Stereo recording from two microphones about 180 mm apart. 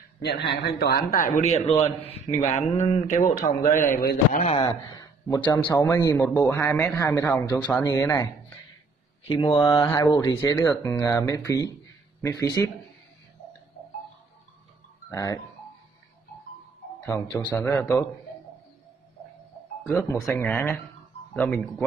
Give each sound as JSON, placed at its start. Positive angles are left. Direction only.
{"t": 0.2, "sound": "a man's voice", "side_deg": 65}
{"t": 1.7, "sound": "a man's voice", "side_deg": 35}
{"t": 4.5, "sound": "a man's voice", "side_deg": 30}
{"t": 4.8, "sound": "a sound", "side_deg": 20}
{"t": 5.6, "sound": "a man's voice", "side_deg": 20}
{"t": 15.0, "sound": "speech", "side_deg": 20}
{"t": 17.0, "sound": "a man's voice", "side_deg": 15}
{"t": 20.0, "sound": "a man's voice", "side_deg": 15}
{"t": 21.3, "sound": "speech", "side_deg": 0}